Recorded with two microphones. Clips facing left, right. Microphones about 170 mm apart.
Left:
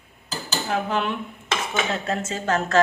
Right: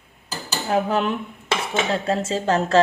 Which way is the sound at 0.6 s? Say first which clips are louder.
Right 4 dB; 40° right (ahead or behind).